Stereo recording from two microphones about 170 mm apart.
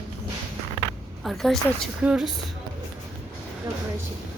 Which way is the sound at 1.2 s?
Centre (ahead or behind).